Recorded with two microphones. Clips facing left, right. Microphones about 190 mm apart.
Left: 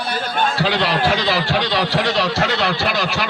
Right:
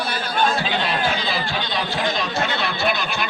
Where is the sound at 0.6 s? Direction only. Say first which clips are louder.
Left 4 dB; 80° left.